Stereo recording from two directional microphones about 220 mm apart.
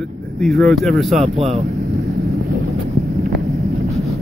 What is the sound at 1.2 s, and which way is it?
Speech, 30° right (ahead or behind).